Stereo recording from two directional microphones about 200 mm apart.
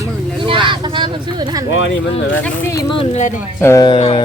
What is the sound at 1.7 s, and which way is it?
Speech, 70° left (ahead or behind).